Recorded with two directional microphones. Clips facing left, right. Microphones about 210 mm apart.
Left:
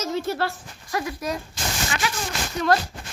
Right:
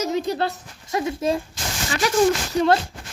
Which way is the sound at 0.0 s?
15° right (ahead or behind).